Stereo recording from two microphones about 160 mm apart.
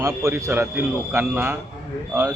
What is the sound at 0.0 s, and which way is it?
A man's voice, 20° right (ahead or behind).